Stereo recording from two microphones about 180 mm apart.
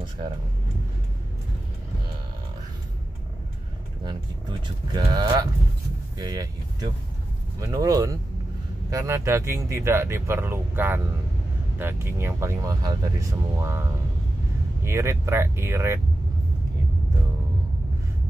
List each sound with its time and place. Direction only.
4.0 s speech: 25° right (ahead or behind)